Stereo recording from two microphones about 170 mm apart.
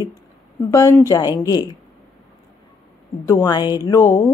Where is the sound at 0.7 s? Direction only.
20° left (ahead or behind).